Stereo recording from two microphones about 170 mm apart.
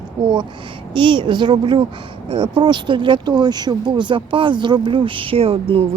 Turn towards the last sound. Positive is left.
turn(degrees=-35)  # may be behind; listen again after turning